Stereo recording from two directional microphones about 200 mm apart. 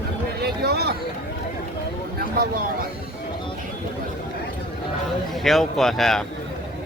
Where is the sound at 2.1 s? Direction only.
50° right (ahead or behind).